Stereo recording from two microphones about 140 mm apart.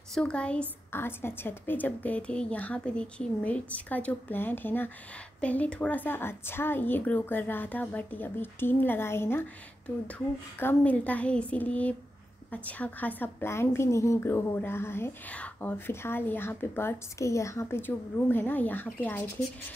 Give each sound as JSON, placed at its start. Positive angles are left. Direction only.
{"t": 0.1, "sound": "a woman's voice", "side_deg": 5}